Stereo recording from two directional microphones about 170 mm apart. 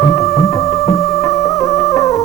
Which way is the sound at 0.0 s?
15° left (ahead or behind).